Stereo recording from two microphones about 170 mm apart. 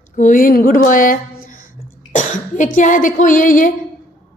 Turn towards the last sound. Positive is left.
turn(degrees=50)  # may be behind; listen again after turning